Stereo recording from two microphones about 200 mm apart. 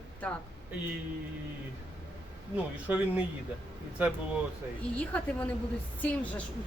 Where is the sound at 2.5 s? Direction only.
5° right (ahead or behind).